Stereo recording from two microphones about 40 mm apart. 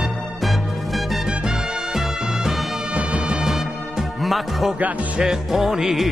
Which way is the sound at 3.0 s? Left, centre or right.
Right.